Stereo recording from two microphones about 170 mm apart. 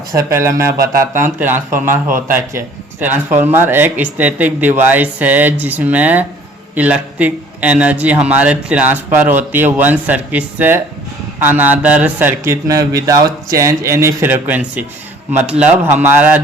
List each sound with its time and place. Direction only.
0.2 s a man's voice: 20° right (ahead or behind)